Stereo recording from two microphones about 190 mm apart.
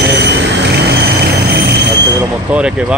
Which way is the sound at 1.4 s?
55° right (ahead or behind).